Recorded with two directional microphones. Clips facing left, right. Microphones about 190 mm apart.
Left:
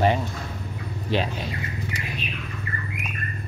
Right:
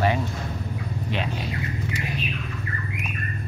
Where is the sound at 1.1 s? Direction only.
35° left (ahead or behind).